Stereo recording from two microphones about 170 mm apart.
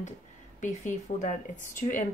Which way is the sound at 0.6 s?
45° left (ahead or behind).